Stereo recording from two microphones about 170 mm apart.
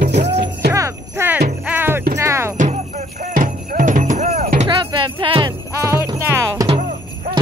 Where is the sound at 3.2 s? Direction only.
55° right (ahead or behind).